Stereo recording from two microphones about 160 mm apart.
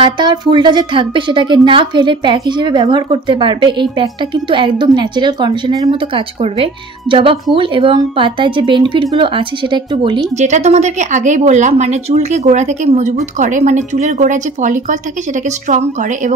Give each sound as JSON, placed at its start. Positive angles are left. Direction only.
{"t": 0.0, "sound": "a woman's voice", "side_deg": -25}
{"t": 10.3, "sound": "speech", "side_deg": -45}